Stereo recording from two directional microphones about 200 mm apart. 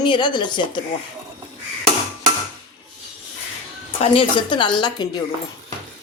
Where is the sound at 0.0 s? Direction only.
25° left (ahead or behind).